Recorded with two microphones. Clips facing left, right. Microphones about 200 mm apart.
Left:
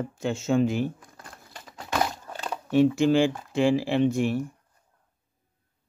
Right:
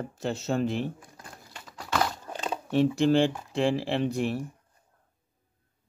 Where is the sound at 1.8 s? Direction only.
20° left (ahead or behind).